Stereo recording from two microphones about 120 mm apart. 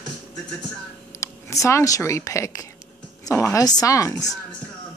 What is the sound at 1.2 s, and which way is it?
A woman's voice, 25° left (ahead or behind).